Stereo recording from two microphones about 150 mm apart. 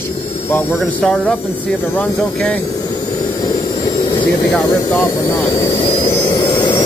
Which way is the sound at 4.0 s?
30° left (ahead or behind).